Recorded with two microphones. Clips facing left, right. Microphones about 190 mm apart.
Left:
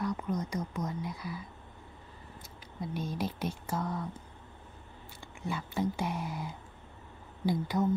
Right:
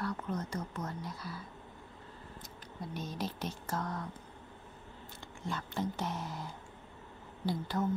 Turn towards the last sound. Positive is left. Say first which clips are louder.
# left 4 dB
turn(degrees=10)  # may be behind; listen again after turning